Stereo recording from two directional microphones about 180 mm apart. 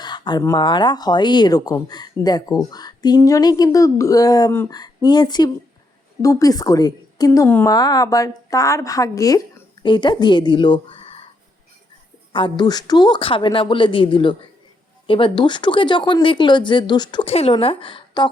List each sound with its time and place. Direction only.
0.0 s a woman's voice: 25° left (ahead or behind)
12.3 s a woman's voice: 25° left (ahead or behind)